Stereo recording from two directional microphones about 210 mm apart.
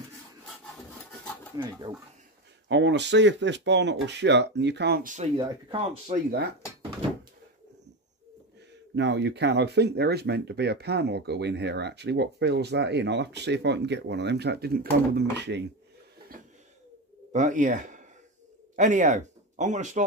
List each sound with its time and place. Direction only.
1.6 s speech: 20° right (ahead or behind)
2.7 s speech: 60° right (ahead or behind)
5.1 s speech: 30° right (ahead or behind)
8.9 s speech: 55° right (ahead or behind)
17.3 s speech: 35° right (ahead or behind)